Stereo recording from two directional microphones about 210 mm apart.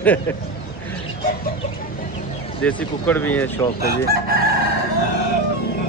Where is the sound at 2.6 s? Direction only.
5° left (ahead or behind).